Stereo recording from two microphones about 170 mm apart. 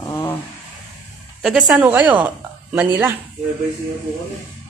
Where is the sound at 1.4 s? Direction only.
5° right (ahead or behind).